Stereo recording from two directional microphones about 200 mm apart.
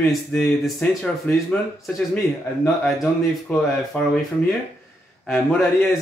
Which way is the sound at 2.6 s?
Centre (ahead or behind).